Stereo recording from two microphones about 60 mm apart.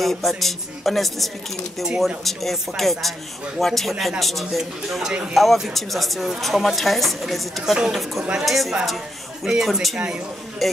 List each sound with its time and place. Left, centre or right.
0.0 s a woman's voice: centre
7.7 s a woman's voice: centre
9.9 s speech: centre
10.6 s a woman's voice: centre